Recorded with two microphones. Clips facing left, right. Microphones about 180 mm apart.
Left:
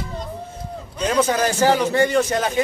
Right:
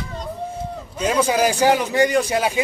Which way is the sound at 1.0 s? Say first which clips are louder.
Right 1 dB; 5° right (ahead or behind).